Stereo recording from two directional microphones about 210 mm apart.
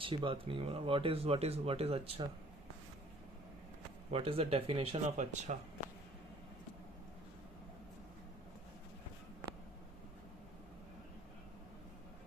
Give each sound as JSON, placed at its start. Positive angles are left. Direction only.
{"t": 0.0, "sound": "speech", "side_deg": -25}
{"t": 4.1, "sound": "speech", "side_deg": -25}